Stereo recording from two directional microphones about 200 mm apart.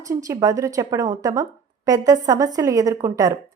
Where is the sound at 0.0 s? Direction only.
15° right (ahead or behind).